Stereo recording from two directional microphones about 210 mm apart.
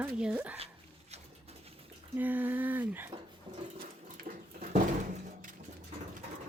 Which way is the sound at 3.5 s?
40° right (ahead or behind).